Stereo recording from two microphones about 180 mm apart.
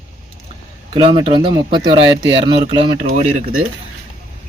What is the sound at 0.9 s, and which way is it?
Speech, 30° right (ahead or behind).